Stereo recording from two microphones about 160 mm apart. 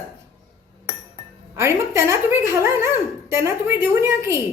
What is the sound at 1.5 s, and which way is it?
Speech, 15° right (ahead or behind).